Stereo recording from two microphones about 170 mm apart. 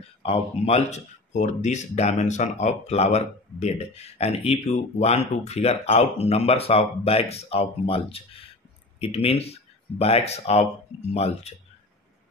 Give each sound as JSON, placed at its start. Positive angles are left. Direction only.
{"t": 0.2, "sound": "speech", "side_deg": 35}